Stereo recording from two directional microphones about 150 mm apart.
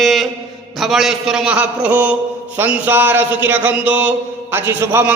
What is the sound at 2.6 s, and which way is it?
A man's voice, 10° right (ahead or behind).